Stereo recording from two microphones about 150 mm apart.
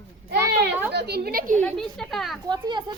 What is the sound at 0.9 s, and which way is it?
Speech, 90° right.